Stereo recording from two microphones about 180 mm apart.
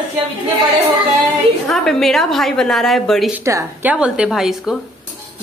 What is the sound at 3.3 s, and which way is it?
A woman's voice, 15° right (ahead or behind).